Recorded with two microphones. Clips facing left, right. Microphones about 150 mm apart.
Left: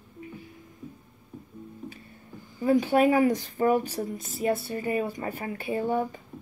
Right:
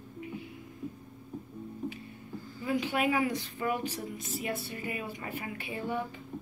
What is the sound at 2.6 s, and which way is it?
Speech, 45° left (ahead or behind).